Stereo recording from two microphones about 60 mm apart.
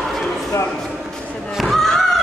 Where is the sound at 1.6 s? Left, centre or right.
Centre.